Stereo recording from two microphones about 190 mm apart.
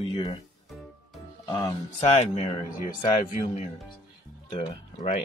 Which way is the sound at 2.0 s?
35° left (ahead or behind).